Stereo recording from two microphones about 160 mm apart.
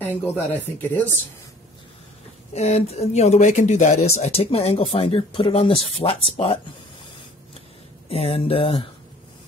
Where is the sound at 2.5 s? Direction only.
45° left (ahead or behind).